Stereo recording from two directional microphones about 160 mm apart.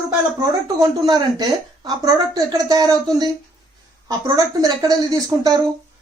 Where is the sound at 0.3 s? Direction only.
25° right (ahead or behind).